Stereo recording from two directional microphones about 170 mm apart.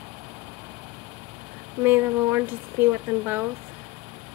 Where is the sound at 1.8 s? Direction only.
10° right (ahead or behind).